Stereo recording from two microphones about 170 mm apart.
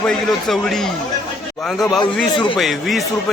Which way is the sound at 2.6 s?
Centre (ahead or behind).